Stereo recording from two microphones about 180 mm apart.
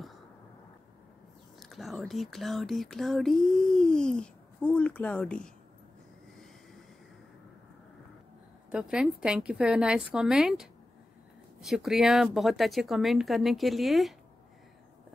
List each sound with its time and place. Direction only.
1.6 s speech: centre (ahead or behind)
8.6 s speech: 5° right (ahead or behind)